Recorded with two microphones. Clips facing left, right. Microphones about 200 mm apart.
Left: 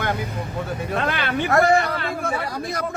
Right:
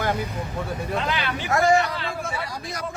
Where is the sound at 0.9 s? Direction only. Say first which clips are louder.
Left 5 dB; 60° left (ahead or behind).